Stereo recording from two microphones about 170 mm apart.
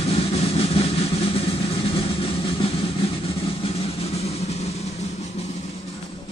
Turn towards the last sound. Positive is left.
turn(degrees=40)  # may be behind; listen again after turning